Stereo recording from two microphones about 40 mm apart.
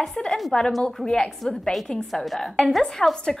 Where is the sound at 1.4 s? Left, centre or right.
Centre.